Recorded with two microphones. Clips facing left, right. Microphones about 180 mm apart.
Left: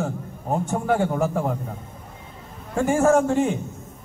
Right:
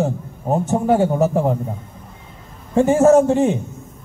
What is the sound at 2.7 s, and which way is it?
Speech, 20° right (ahead or behind).